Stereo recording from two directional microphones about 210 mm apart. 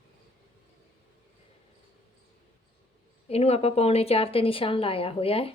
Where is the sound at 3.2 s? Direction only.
30° left (ahead or behind).